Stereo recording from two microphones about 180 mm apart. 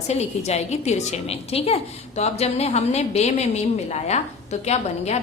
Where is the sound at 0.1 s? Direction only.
35° left (ahead or behind).